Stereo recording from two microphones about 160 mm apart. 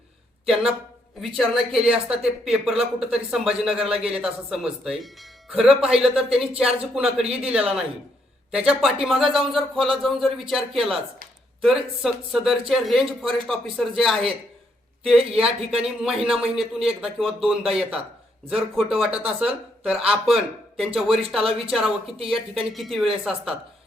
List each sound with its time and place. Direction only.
0.4 s speech: centre (ahead or behind)
1.9 s speech: 5° right (ahead or behind)
15.2 s speech: 40° right (ahead or behind)
15.7 s speech: 5° right (ahead or behind)